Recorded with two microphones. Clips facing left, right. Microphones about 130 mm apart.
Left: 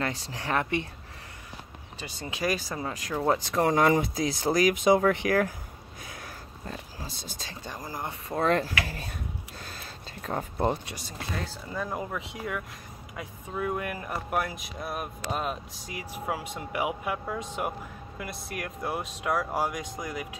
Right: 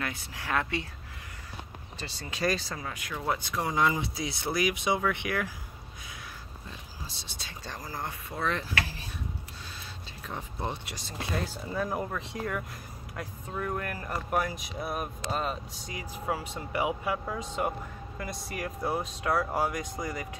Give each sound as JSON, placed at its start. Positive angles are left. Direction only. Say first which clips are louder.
{"t": 0.0, "sound": "speech", "louder": "left 4 dB", "side_deg": 30}
{"t": 2.0, "sound": "speech", "louder": "left 1 dB", "side_deg": 15}
{"t": 2.8, "sound": "speech", "louder": "left 7 dB", "side_deg": 35}
{"t": 3.6, "sound": "speech", "louder": "left 5 dB", "side_deg": 55}
{"t": 6.6, "sound": "speech", "louder": "left 8 dB", "side_deg": 45}
{"t": 7.8, "sound": "speech", "louder": "left 1 dB", "side_deg": 20}
{"t": 8.3, "sound": "speech", "louder": "left 8 dB", "side_deg": 45}
{"t": 10.2, "sound": "speech", "louder": "left 8 dB", "side_deg": 45}
{"t": 11.1, "sound": "speech", "louder": "right 2 dB", "side_deg": -5}